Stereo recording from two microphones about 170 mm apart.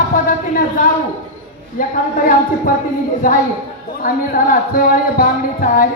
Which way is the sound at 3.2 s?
55° left (ahead or behind).